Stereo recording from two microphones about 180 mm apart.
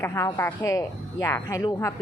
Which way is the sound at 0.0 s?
15° left (ahead or behind).